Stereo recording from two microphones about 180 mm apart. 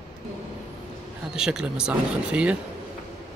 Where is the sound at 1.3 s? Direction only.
5° right (ahead or behind).